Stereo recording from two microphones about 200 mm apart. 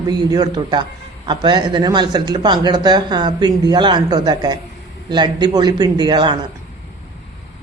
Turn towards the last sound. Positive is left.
turn(degrees=-20)  # may be behind; listen again after turning